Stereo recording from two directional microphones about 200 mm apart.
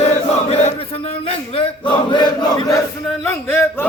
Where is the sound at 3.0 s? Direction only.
10° left (ahead or behind).